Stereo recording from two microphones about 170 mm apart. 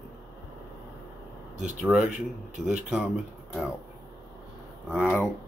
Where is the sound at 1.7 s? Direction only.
5° right (ahead or behind).